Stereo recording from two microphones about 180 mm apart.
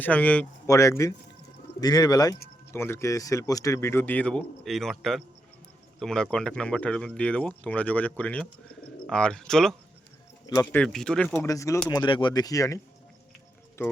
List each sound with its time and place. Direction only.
0.0 s a man's voice: 10° left (ahead or behind)
10.4 s speech: 20° left (ahead or behind)
11.4 s speech: 15° left (ahead or behind)